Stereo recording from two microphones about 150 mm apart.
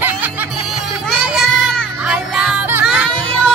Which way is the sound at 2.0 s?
5° right (ahead or behind).